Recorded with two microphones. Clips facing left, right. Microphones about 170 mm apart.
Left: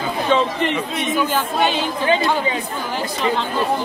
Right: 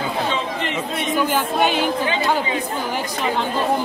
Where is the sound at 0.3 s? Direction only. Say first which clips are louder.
Left 8 dB; 55° left (ahead or behind).